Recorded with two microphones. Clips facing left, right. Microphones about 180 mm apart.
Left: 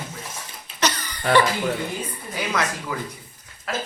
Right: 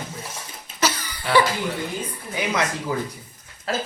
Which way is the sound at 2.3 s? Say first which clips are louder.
Right 1 dB; 20° right (ahead or behind).